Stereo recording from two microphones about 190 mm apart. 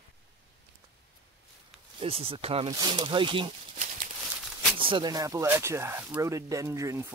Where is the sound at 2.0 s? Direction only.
30° right (ahead or behind).